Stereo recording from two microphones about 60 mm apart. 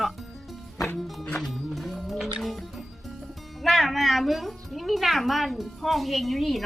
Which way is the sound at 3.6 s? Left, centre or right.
Centre.